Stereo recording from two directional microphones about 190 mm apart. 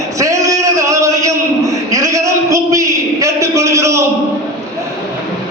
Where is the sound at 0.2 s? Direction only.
15° right (ahead or behind).